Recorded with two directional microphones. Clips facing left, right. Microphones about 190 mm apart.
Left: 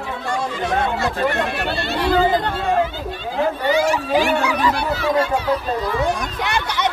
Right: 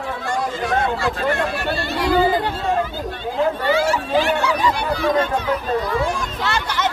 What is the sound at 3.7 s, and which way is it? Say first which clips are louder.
Speech: left 1 dB; 15° left (ahead or behind).